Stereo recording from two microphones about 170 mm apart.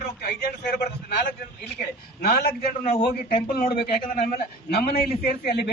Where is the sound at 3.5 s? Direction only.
60° left (ahead or behind).